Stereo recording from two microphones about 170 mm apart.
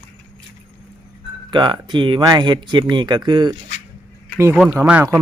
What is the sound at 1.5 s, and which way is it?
Speech, 25° right (ahead or behind).